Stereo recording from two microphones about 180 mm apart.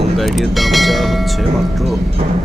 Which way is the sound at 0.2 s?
Centre (ahead or behind).